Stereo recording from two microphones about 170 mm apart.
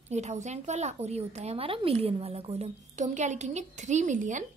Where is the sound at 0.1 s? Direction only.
40° right (ahead or behind).